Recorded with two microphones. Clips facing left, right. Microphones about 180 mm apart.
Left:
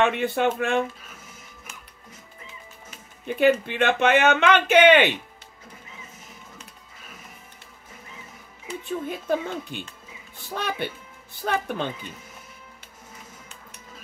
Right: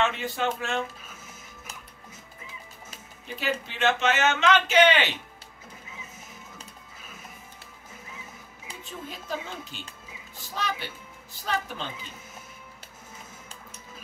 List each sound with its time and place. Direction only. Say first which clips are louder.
0.0 s speech: left 5 dB; 60° left (ahead or behind)
3.3 s speech: left 11 dB; 55° left (ahead or behind)
8.6 s speech: left 10 dB; 55° left (ahead or behind)